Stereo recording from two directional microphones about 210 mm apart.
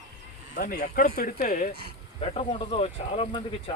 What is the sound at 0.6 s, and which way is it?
Speech, 45° left (ahead or behind).